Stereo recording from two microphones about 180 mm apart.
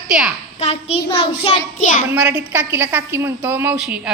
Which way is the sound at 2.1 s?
5° right (ahead or behind).